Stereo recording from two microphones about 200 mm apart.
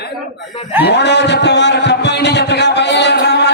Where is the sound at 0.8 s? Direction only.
60° left (ahead or behind).